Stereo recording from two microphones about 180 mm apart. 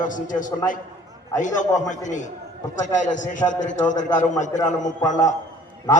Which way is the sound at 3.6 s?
45° left (ahead or behind).